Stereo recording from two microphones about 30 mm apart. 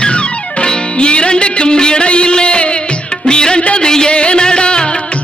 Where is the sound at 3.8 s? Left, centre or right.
Left.